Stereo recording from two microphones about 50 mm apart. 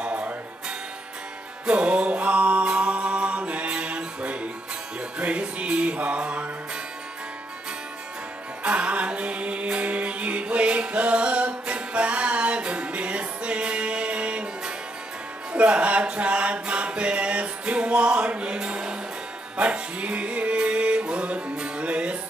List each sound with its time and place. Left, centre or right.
0.0 s music: right
8.6 s music: right
15.5 s music: right